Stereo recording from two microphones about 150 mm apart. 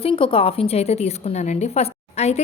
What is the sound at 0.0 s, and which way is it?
A woman's voice, 40° left (ahead or behind).